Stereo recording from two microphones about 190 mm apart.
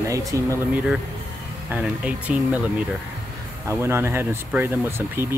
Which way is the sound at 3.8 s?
10° right (ahead or behind).